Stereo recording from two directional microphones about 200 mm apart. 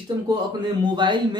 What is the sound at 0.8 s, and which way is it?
Speech, 25° right (ahead or behind).